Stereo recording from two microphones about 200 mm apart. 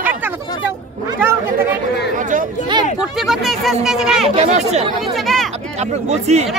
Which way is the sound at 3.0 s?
Centre (ahead or behind).